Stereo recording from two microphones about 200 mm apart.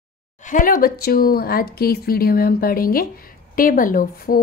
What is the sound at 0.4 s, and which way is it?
A woman's voice, 40° left (ahead or behind).